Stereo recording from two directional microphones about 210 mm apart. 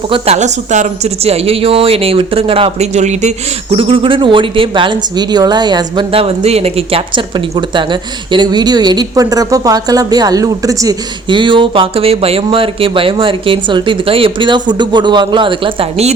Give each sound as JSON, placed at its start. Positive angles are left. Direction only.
{"t": 0.1, "sound": "speech", "side_deg": -30}